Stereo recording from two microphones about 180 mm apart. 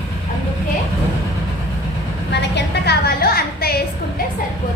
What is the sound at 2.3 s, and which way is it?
A woman's voice, 65° left (ahead or behind).